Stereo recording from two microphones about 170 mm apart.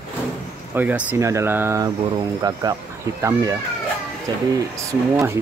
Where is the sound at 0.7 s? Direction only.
10° right (ahead or behind).